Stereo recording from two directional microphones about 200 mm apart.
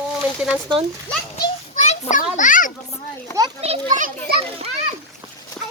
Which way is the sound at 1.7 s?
40° left (ahead or behind).